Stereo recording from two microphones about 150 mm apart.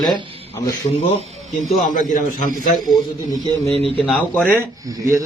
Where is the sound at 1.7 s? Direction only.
60° left (ahead or behind).